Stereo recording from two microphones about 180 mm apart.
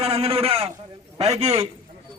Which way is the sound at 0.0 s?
35° right (ahead or behind).